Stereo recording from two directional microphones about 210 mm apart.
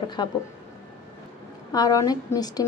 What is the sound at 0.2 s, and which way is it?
Speech, 20° left (ahead or behind).